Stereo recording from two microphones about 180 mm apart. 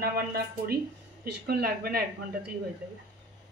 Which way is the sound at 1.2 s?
60° right (ahead or behind).